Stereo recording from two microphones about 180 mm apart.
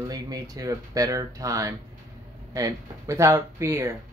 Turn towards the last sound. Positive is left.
turn(degrees=-15)  # may be behind; listen again after turning